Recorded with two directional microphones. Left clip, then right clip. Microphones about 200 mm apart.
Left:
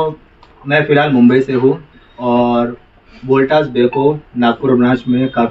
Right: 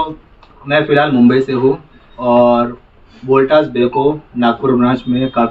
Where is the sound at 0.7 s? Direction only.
5° right (ahead or behind).